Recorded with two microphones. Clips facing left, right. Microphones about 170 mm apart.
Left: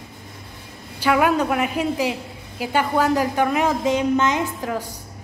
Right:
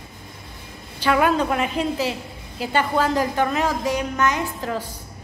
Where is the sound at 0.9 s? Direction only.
10° left (ahead or behind).